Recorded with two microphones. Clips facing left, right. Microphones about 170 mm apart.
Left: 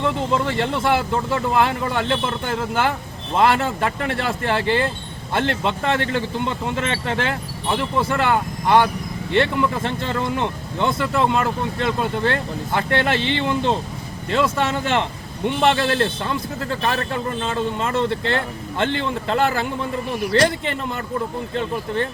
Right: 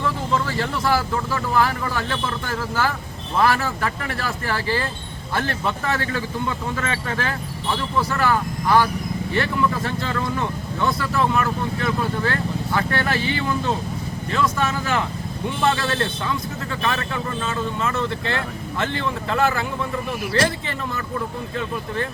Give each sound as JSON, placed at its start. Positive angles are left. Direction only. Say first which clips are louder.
{"t": 0.0, "sound": "speech", "louder": "left 3 dB", "side_deg": 25}